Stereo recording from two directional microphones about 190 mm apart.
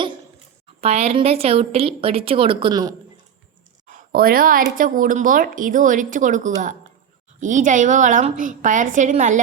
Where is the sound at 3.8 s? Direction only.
50° right (ahead or behind).